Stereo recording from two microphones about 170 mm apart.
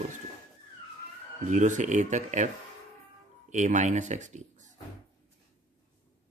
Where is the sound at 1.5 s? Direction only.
45° right (ahead or behind).